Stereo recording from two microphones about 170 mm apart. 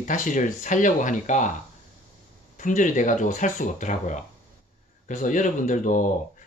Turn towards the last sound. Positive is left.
turn(degrees=50)  # may be behind; listen again after turning